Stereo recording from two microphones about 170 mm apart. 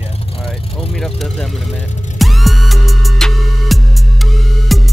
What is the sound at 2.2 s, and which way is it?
Music, centre (ahead or behind).